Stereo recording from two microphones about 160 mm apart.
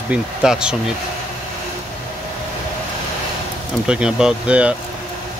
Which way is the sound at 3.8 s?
5° right (ahead or behind).